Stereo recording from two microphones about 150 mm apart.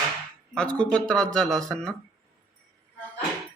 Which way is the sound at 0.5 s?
5° left (ahead or behind).